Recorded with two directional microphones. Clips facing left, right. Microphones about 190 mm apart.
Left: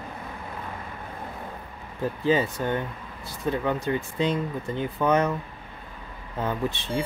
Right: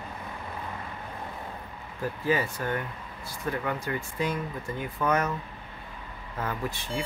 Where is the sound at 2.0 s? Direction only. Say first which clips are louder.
Left 4 dB; 25° left (ahead or behind).